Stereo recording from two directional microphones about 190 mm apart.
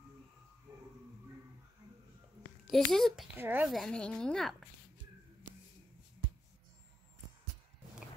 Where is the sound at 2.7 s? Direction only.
Centre (ahead or behind).